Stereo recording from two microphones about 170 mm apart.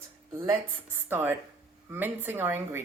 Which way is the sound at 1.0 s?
10° right (ahead or behind).